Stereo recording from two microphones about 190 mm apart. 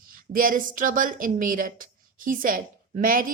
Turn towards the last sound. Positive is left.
turn(degrees=-45)  # may be behind; listen again after turning